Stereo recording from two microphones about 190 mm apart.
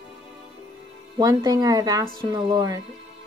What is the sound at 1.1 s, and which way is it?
Speech, 20° right (ahead or behind).